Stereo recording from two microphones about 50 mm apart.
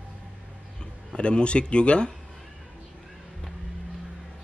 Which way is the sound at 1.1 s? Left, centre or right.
Left.